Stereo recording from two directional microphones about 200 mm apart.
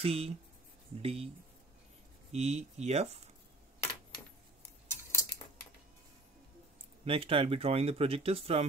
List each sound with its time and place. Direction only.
0.0 s speech: 30° right (ahead or behind)
2.3 s speech: 30° right (ahead or behind)
7.1 s speech: 25° right (ahead or behind)